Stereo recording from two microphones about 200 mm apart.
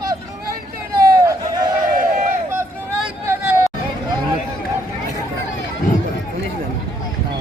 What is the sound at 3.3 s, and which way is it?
Hubbub, 15° right (ahead or behind).